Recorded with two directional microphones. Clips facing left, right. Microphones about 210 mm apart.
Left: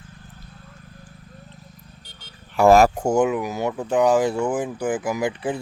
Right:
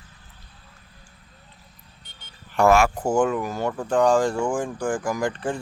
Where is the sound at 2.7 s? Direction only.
40° left (ahead or behind).